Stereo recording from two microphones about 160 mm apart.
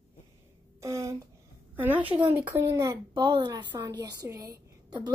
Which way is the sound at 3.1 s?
25° right (ahead or behind).